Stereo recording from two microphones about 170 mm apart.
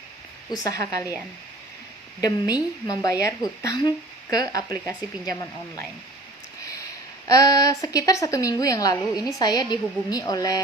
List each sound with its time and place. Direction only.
0.5 s a woman's voice: 20° left (ahead or behind)
2.2 s a woman's voice: 20° left (ahead or behind)
7.3 s a woman's voice: 20° left (ahead or behind)